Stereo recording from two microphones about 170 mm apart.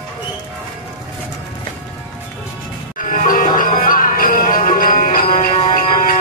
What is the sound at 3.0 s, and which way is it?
Music, 50° left (ahead or behind).